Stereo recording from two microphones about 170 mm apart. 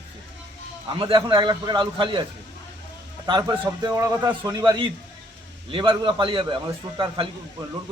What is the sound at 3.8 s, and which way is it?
A man's voice, 15° right (ahead or behind).